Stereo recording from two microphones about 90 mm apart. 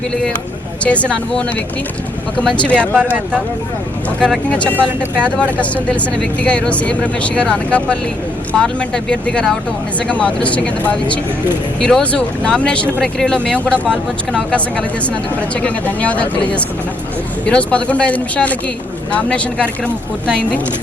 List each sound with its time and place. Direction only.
0.9 s speech: 15° left (ahead or behind)
2.6 s speech: 15° left (ahead or behind)
2.9 s speech: 20° right (ahead or behind)
4.4 s speech: 15° left (ahead or behind)